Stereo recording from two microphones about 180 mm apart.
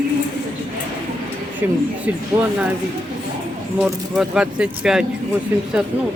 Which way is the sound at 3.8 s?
5° right (ahead or behind).